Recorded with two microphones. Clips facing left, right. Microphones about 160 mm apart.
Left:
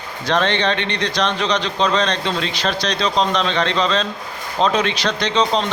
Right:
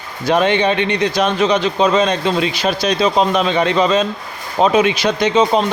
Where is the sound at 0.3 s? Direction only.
10° right (ahead or behind).